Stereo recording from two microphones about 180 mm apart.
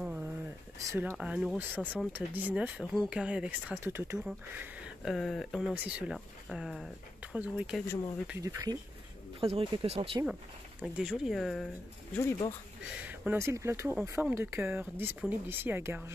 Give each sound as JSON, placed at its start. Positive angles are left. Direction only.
{"t": 0.0, "sound": "a sound", "side_deg": -5}
{"t": 0.8, "sound": "speech", "side_deg": -10}
{"t": 7.8, "sound": "speech", "side_deg": 15}
{"t": 8.3, "sound": "speech", "side_deg": -15}
{"t": 9.4, "sound": "speech", "side_deg": -30}
{"t": 10.8, "sound": "speech", "side_deg": -5}
{"t": 12.2, "sound": "speech", "side_deg": 15}
{"t": 13.0, "sound": "speech", "side_deg": -10}